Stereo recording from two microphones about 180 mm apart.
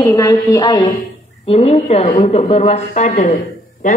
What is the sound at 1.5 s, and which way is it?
Speech, 35° left (ahead or behind).